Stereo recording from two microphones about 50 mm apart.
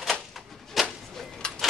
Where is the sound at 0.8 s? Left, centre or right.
Centre.